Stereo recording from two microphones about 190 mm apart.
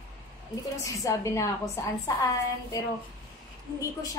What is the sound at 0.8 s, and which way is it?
A woman's voice, 15° left (ahead or behind).